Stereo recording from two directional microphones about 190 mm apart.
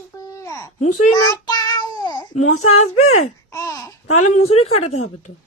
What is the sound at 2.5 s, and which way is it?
Speech, 90° left.